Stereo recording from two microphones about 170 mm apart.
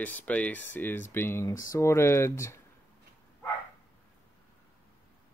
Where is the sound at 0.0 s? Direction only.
10° left (ahead or behind).